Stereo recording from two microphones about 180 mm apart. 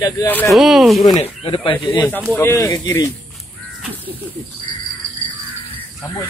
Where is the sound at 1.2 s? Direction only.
30° left (ahead or behind).